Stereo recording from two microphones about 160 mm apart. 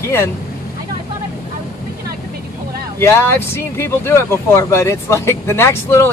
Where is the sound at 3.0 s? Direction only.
15° left (ahead or behind).